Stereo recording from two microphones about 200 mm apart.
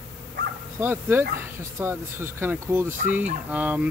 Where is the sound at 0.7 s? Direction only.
10° right (ahead or behind).